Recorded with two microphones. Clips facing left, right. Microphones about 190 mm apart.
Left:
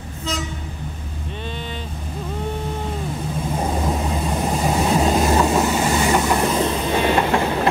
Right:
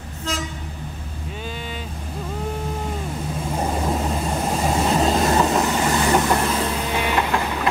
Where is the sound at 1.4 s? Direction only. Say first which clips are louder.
Left 1 dB; 5° right (ahead or behind).